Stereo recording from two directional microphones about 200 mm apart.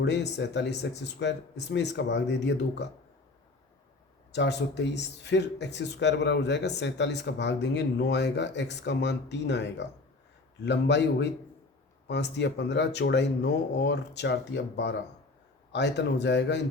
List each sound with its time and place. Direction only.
0.0 s speech: 60° left (ahead or behind)
4.3 s speech: 60° left (ahead or behind)